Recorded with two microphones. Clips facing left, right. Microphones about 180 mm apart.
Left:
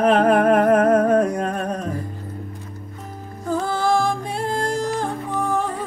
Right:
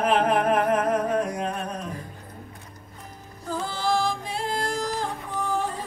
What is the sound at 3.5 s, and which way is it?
Music, 55° left (ahead or behind).